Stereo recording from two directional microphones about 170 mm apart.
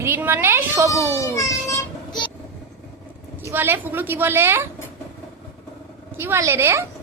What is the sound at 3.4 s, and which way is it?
A woman's voice, 10° right (ahead or behind).